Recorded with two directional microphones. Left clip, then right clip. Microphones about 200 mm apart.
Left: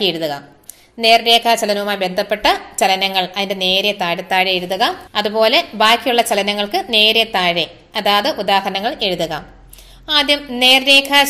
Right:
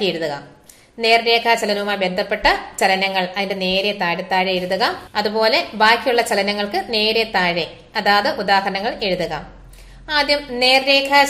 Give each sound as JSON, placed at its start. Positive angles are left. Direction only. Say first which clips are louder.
{"t": 0.0, "sound": "a woman's voice", "louder": "left 3 dB", "side_deg": 35}